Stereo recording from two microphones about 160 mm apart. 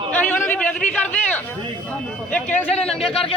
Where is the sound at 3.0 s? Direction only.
35° left (ahead or behind).